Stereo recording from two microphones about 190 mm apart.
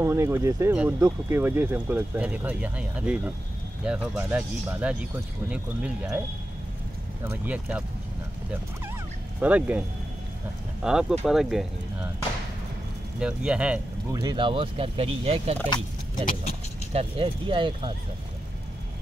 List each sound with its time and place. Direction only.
0.0 s speech: 15° right (ahead or behind)
7.2 s speech: 10° right (ahead or behind)
9.4 s speech: 10° right (ahead or behind)
13.2 s speech: 5° right (ahead or behind)
14.1 s speech: 25° right (ahead or behind)
16.9 s speech: 30° right (ahead or behind)